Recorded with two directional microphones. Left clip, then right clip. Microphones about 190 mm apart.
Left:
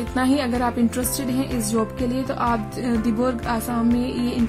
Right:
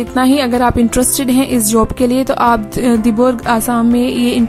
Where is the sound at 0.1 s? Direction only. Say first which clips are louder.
Right 9 dB; 25° right (ahead or behind).